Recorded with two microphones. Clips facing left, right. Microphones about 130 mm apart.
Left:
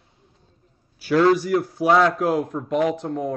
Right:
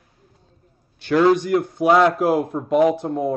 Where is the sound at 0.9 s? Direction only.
5° left (ahead or behind).